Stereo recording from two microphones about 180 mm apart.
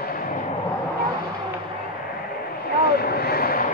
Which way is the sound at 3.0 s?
60° left (ahead or behind).